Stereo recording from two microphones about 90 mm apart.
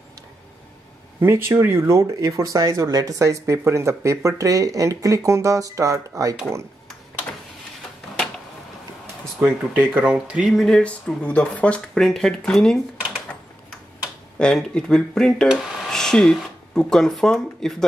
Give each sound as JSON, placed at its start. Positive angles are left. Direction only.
{"t": 1.2, "sound": "speech", "side_deg": -30}
{"t": 9.4, "sound": "speech", "side_deg": -20}
{"t": 10.4, "sound": "speech", "side_deg": 5}
{"t": 12.0, "sound": "speech", "side_deg": 5}
{"t": 13.3, "sound": "typewriter", "side_deg": 15}
{"t": 14.4, "sound": "speech", "side_deg": 10}